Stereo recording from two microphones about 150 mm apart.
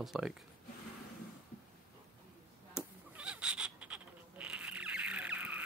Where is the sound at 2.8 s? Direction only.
10° right (ahead or behind).